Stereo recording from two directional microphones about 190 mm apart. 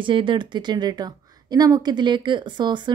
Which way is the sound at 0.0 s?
25° right (ahead or behind).